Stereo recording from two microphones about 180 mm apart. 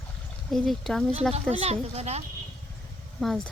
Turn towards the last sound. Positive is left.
turn(degrees=5)  # may be behind; listen again after turning